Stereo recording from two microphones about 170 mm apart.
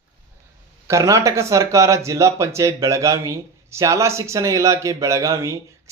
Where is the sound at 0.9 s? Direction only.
20° right (ahead or behind).